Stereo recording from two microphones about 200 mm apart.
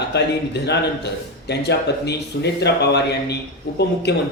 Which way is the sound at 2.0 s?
55° left (ahead or behind).